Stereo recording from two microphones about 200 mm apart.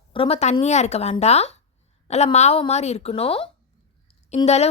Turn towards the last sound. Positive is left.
turn(degrees=30)  # may be behind; listen again after turning